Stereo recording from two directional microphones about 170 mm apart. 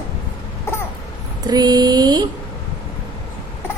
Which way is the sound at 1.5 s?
25° right (ahead or behind).